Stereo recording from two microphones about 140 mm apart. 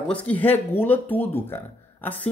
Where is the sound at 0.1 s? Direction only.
10° left (ahead or behind).